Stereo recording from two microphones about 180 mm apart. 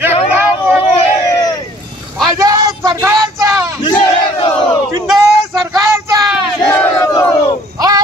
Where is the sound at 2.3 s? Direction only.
20° right (ahead or behind).